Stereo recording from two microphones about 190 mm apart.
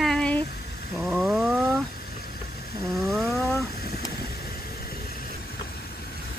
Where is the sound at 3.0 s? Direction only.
Centre (ahead or behind).